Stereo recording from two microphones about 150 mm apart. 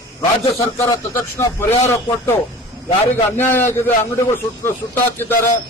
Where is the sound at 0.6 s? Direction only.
20° left (ahead or behind).